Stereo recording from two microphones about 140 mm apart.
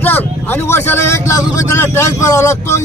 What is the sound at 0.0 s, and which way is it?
A man's voice, 15° left (ahead or behind).